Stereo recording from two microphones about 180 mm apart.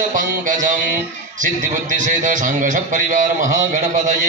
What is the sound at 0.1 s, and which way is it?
A man's voice, 45° right (ahead or behind).